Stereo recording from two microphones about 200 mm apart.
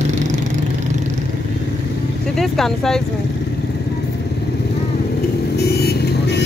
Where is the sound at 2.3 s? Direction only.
Centre (ahead or behind).